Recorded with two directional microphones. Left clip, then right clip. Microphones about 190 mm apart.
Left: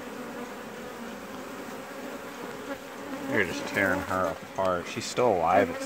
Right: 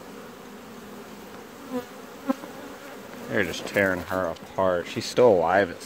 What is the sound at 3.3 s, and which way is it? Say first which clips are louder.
Speech: right 2 dB; 40° right (ahead or behind).